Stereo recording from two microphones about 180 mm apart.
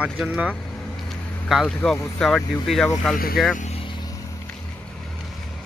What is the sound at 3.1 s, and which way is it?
Speech, 55° left (ahead or behind).